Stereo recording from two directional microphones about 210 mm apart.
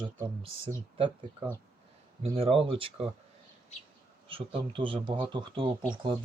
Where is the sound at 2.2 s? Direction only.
25° right (ahead or behind).